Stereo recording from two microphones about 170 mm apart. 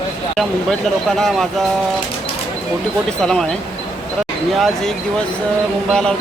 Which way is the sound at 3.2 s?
5° left (ahead or behind).